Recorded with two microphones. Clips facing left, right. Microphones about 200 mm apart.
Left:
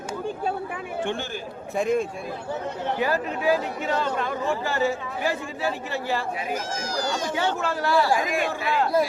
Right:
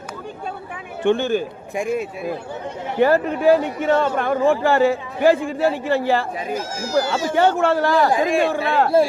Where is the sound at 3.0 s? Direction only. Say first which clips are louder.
Right 10 dB; 60° right (ahead or behind).